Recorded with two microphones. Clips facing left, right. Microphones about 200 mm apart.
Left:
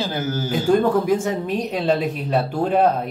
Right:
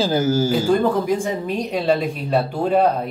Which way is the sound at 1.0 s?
5° left (ahead or behind).